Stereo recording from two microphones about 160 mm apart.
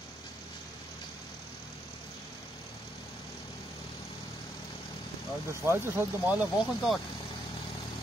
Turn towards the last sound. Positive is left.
turn(degrees=-10)  # may be behind; listen again after turning